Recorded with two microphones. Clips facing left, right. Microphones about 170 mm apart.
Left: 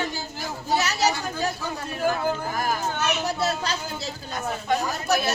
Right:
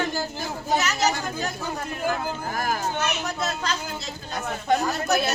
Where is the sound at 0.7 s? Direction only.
35° left (ahead or behind).